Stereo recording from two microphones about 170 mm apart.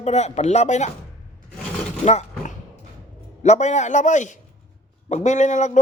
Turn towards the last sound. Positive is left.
turn(degrees=45)  # may be behind; listen again after turning